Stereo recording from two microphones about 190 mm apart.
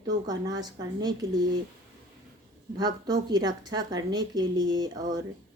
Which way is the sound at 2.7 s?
20° right (ahead or behind).